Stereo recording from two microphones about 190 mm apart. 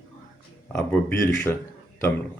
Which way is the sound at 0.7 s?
10° left (ahead or behind).